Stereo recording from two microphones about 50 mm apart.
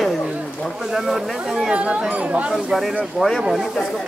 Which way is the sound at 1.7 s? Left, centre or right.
Right.